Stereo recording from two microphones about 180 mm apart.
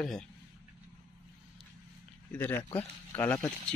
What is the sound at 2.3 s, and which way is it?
Speech, 10° left (ahead or behind).